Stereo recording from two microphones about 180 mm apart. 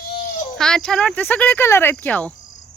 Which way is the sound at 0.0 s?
45° left (ahead or behind).